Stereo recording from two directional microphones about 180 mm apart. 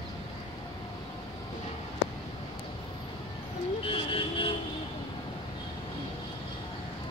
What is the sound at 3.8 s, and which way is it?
Vehicle, 30° left (ahead or behind).